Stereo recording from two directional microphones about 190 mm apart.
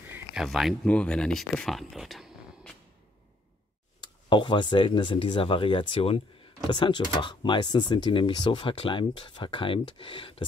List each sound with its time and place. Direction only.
0.0 s speech: 5° right (ahead or behind)
4.0 s speech: 25° left (ahead or behind)